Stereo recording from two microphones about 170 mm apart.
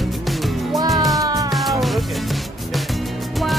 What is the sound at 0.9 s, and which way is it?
Music, centre (ahead or behind).